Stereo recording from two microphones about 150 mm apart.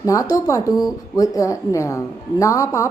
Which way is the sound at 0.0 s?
20° left (ahead or behind).